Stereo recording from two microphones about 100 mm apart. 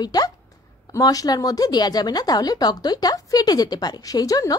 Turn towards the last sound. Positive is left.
turn(degrees=35)  # may be behind; listen again after turning